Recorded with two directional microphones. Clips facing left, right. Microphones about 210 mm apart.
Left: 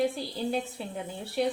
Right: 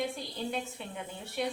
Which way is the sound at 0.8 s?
35° left (ahead or behind).